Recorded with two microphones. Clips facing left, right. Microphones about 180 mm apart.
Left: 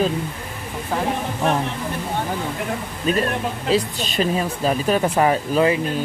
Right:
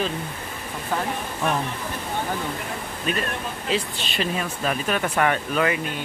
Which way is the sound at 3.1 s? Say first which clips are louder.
Left 7 dB; 35° left (ahead or behind).